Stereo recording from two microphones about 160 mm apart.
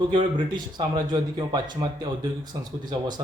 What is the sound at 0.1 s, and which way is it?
Speech, 30° right (ahead or behind).